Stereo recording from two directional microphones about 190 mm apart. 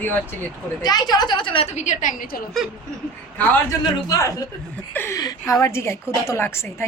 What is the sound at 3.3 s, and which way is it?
A woman's voice, 15° left (ahead or behind).